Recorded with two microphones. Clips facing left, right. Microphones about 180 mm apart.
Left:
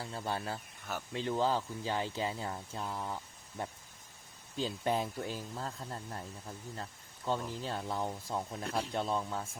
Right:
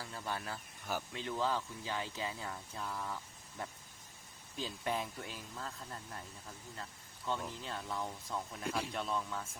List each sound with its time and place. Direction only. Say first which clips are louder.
0.0 s speech: left 4 dB; 30° left (ahead or behind)
7.3 s speech: left 4 dB; 35° left (ahead or behind)